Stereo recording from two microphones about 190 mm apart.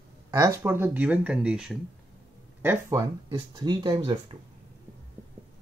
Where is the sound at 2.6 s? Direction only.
15° right (ahead or behind).